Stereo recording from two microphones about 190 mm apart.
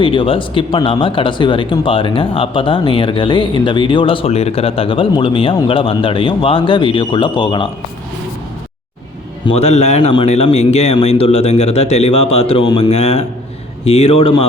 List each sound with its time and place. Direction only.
0.0 s speech: 30° left (ahead or behind)
9.5 s a man's voice: 35° left (ahead or behind)